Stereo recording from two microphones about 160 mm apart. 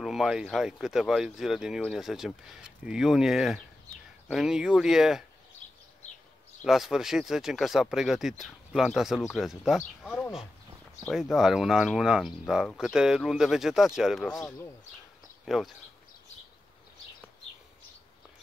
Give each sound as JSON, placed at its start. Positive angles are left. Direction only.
{"t": 0.0, "sound": "speech", "side_deg": 0}
{"t": 6.6, "sound": "speech", "side_deg": 0}
{"t": 9.8, "sound": "speech", "side_deg": 10}
{"t": 11.1, "sound": "speech", "side_deg": 0}
{"t": 15.4, "sound": "speech", "side_deg": 0}